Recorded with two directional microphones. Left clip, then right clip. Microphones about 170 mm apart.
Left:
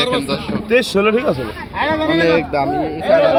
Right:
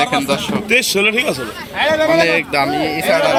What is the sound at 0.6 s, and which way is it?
Speech, 45° left (ahead or behind).